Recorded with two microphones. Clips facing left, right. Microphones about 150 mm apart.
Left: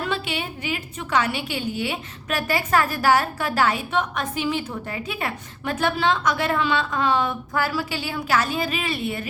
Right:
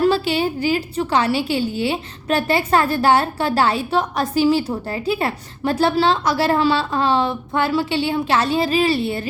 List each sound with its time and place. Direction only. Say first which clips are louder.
0.0 s a woman's voice: right 10 dB; 35° right (ahead or behind)